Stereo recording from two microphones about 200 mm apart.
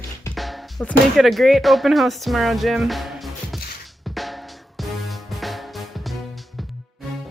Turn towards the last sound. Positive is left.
turn(degrees=0)  # may be behind; listen again after turning